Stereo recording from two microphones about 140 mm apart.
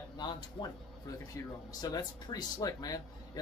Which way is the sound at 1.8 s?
30° left (ahead or behind).